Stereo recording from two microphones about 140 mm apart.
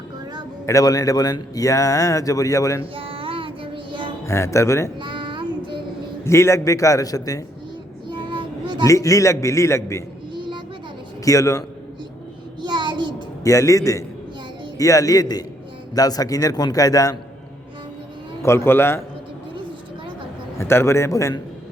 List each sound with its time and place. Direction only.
0.6 s a man's voice: 25° left (ahead or behind)
2.8 s child singing: 40° right (ahead or behind)
4.3 s a man's voice: 20° left (ahead or behind)
4.9 s child singing: 35° right (ahead or behind)
6.2 s a man's voice: 20° left (ahead or behind)
8.0 s child singing: 35° right (ahead or behind)
8.8 s a man's voice: 25° left (ahead or behind)
10.3 s music: 35° right (ahead or behind)
11.3 s a man's voice: 25° left (ahead or behind)
12.6 s child singing: 35° right (ahead or behind)
13.4 s a man's voice: 25° left (ahead or behind)
18.4 s a man's voice: 20° left (ahead or behind)
20.6 s a man's voice: 20° left (ahead or behind)